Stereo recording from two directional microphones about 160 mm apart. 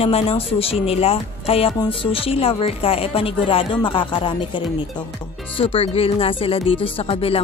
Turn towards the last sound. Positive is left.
turn(degrees=35)  # may be behind; listen again after turning